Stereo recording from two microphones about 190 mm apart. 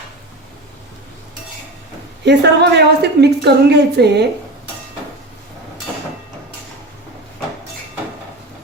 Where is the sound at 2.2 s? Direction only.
65° right (ahead or behind).